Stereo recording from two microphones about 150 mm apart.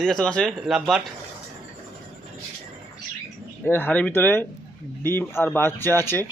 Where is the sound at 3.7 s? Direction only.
10° left (ahead or behind).